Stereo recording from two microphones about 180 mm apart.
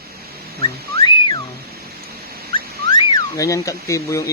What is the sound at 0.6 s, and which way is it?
Whistling, 25° left (ahead or behind).